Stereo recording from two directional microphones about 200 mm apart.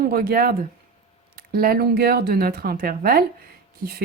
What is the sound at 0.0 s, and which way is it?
Speech, 50° right (ahead or behind).